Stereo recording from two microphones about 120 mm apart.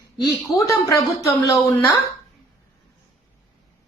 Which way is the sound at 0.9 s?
30° left (ahead or behind).